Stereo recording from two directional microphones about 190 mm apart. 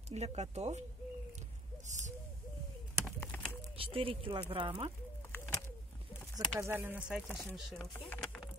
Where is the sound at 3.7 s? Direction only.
30° right (ahead or behind).